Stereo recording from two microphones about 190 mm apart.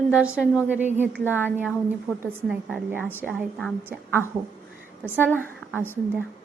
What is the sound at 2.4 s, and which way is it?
Speech, 5° right (ahead or behind).